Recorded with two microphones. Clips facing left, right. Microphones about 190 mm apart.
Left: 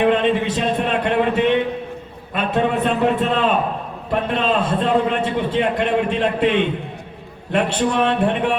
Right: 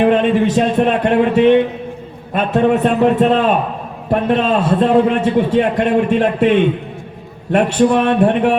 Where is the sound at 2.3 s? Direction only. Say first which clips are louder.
Right 6 dB; 45° right (ahead or behind).